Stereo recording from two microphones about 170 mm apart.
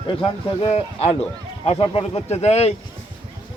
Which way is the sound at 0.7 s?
35° left (ahead or behind).